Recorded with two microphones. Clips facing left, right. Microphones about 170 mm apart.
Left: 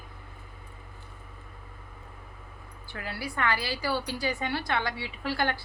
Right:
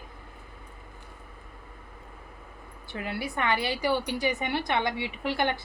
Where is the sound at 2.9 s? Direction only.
20° right (ahead or behind).